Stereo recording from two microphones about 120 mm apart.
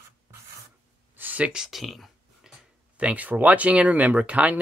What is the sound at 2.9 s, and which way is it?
Speech, 10° right (ahead or behind).